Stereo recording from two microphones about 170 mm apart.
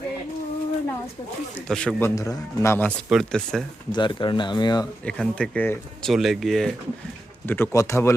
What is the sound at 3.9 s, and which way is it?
Speech, 30° left (ahead or behind).